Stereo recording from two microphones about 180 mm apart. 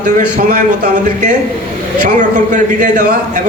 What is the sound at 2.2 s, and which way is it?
Speech, 45° right (ahead or behind).